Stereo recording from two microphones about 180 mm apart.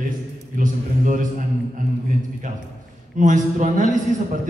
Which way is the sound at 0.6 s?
45° right (ahead or behind).